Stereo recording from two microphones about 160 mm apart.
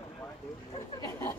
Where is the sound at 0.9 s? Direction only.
20° left (ahead or behind).